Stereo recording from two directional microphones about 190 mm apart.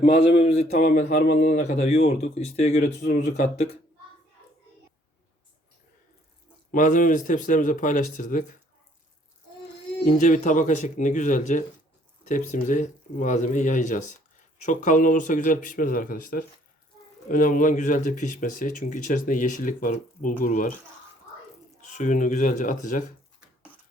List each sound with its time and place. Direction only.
0.2 s speech: 35° left (ahead or behind)
3.0 s speech: 60° left (ahead or behind)
3.2 s speech: 40° left (ahead or behind)
6.7 s speech: 45° left (ahead or behind)
10.2 s speech: 40° left (ahead or behind)
21.8 s speech: 40° left (ahead or behind)